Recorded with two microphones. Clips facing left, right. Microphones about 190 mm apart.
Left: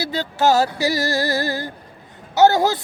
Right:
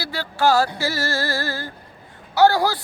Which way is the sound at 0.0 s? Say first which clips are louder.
Left 2 dB; 20° left (ahead or behind).